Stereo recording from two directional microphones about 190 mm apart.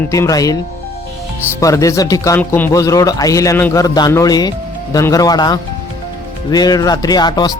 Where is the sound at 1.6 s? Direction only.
15° left (ahead or behind).